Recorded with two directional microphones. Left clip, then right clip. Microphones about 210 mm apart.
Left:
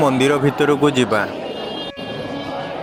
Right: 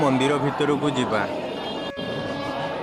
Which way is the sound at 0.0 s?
40° left (ahead or behind).